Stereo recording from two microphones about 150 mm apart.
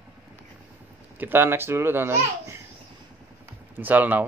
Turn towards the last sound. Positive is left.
turn(degrees=-10)  # may be behind; listen again after turning